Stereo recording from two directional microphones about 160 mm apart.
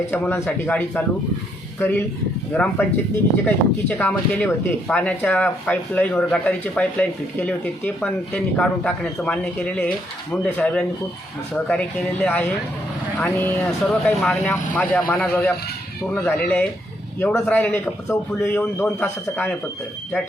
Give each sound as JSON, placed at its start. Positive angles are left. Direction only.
{"t": 0.1, "sound": "speech", "side_deg": 15}